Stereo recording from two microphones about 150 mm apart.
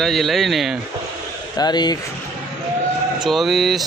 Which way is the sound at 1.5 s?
25° left (ahead or behind).